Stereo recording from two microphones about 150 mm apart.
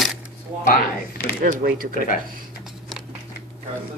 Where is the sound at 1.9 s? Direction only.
65° left (ahead or behind).